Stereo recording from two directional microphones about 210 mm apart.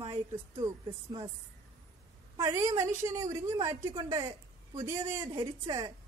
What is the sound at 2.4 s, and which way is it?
A woman's voice, 15° right (ahead or behind).